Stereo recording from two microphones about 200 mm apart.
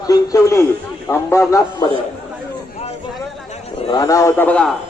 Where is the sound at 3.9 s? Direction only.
15° left (ahead or behind).